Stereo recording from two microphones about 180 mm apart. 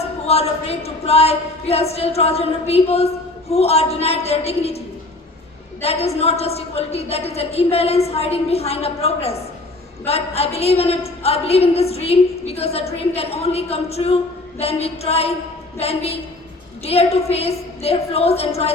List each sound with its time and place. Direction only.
0.3 s a woman's voice: 35° left (ahead or behind)
5.8 s a woman's voice: 35° left (ahead or behind)